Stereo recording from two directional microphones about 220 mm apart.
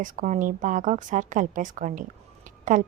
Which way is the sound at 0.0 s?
35° right (ahead or behind).